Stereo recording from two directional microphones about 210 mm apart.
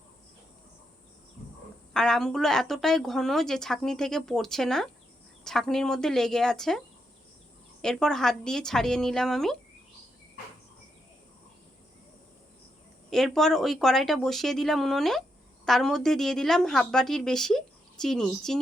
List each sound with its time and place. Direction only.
1.9 s speech: 5° left (ahead or behind)
13.1 s speech: centre (ahead or behind)